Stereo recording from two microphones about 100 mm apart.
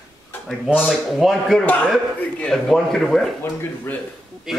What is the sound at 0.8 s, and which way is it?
Speech, centre (ahead or behind).